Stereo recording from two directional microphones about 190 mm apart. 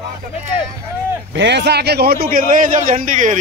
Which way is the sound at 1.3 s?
65° right (ahead or behind).